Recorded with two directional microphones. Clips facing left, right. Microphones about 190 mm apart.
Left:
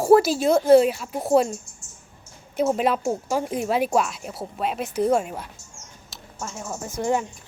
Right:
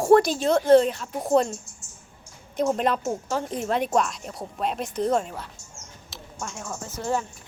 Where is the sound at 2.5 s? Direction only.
5° left (ahead or behind).